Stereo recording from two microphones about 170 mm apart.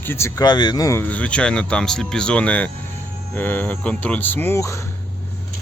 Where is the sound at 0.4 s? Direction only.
25° left (ahead or behind).